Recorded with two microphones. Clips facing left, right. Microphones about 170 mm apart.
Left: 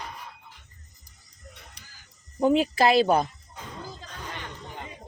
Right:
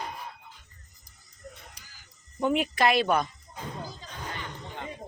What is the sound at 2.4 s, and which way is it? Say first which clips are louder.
Speech: left 4 dB; 30° left (ahead or behind).